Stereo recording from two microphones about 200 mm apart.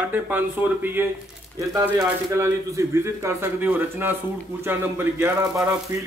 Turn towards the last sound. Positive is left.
turn(degrees=-15)  # may be behind; listen again after turning